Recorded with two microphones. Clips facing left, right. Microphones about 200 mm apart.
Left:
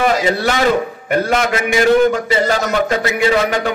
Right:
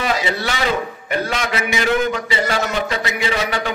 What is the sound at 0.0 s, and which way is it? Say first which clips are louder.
A man's voice: left 6 dB; 45° left (ahead or behind).